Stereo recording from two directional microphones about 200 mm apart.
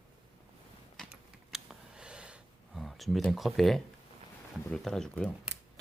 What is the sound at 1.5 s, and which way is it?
Gasp, 5° right (ahead or behind).